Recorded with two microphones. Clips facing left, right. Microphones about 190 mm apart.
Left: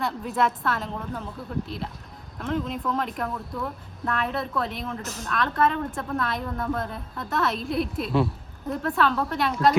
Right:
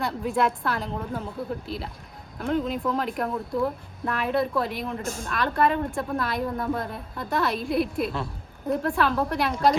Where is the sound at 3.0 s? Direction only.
Centre (ahead or behind).